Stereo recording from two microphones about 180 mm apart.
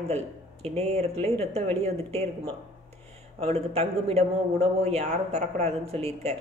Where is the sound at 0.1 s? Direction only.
35° right (ahead or behind).